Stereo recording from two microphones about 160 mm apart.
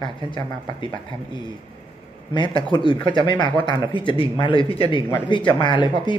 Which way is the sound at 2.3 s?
30° left (ahead or behind).